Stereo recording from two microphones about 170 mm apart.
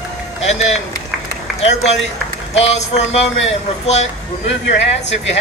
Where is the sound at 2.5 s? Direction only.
40° left (ahead or behind).